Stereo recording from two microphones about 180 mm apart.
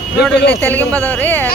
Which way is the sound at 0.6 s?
10° left (ahead or behind).